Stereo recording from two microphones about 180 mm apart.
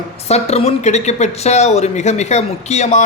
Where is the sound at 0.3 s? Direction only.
35° left (ahead or behind).